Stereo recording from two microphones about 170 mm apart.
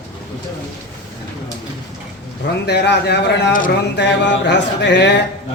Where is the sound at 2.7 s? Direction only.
80° left.